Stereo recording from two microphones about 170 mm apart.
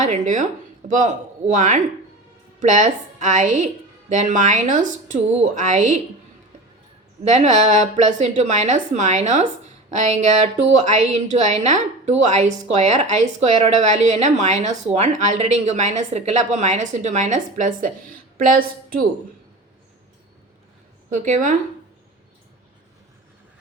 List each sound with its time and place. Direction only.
0.0 s a woman's voice: 45° right (ahead or behind)
7.3 s a woman's voice: 45° right (ahead or behind)
9.9 s a sound: 40° right (ahead or behind)
10.8 s a woman's voice: 40° right (ahead or behind)
21.1 s a woman's voice: 50° right (ahead or behind)